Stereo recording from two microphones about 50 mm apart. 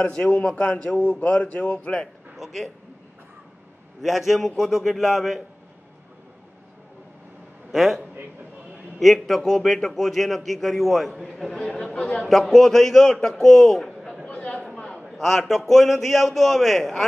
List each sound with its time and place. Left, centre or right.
0.0 s a man's voice: left
2.3 s speech: centre
4.0 s a man's voice: centre
7.7 s a man's voice: centre
9.0 s a man's voice: centre
12.3 s a man's voice: centre
14.2 s a sound: centre
15.0 s a man's voice: centre